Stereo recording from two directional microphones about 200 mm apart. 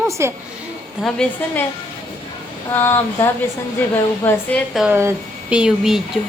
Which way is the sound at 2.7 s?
10° left (ahead or behind).